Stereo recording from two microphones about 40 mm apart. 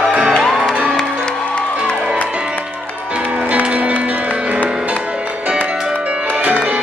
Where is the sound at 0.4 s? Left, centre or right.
Centre.